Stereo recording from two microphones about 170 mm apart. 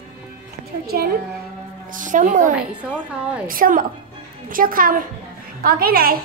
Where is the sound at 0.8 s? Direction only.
65° right (ahead or behind).